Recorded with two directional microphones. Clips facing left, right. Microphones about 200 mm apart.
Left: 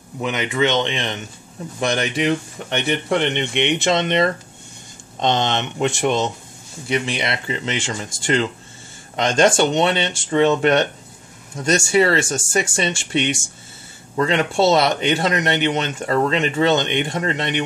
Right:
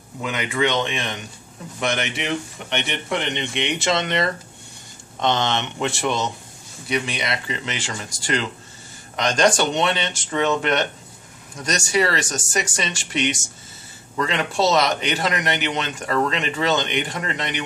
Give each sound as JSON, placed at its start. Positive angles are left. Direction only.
{"t": 0.2, "sound": "a man's voice", "side_deg": 20}
{"t": 3.3, "sound": "speech", "side_deg": 20}
{"t": 5.2, "sound": "speech", "side_deg": 20}